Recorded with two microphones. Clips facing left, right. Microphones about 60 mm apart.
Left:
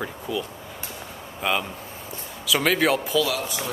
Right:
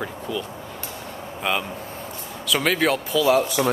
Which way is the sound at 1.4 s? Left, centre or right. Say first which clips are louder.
Even; centre.